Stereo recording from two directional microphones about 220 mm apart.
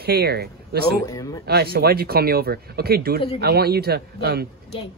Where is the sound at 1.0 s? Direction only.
15° left (ahead or behind).